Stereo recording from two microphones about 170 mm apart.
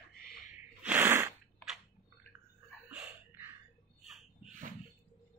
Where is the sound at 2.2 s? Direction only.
10° left (ahead or behind).